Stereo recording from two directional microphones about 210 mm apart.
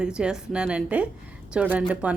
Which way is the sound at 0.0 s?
5° right (ahead or behind).